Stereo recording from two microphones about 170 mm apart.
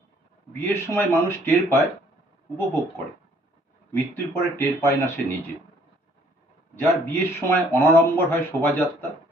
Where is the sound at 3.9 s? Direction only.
10° left (ahead or behind).